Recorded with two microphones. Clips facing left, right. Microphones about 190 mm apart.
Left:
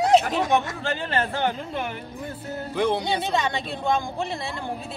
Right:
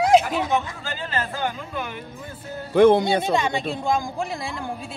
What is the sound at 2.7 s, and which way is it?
Speech, 50° right (ahead or behind).